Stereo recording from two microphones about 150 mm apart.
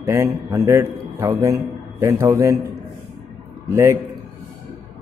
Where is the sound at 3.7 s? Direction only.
20° right (ahead or behind).